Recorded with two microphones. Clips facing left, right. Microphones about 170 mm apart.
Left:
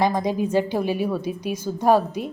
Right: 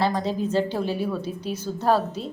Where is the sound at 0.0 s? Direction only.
15° left (ahead or behind).